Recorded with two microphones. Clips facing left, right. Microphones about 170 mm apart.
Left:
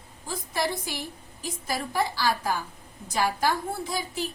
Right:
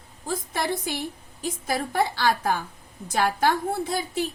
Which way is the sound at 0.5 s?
60° right (ahead or behind).